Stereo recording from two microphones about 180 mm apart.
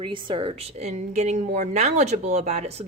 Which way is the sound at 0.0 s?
30° right (ahead or behind).